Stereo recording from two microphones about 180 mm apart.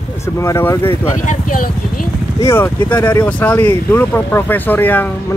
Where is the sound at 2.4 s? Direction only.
15° left (ahead or behind).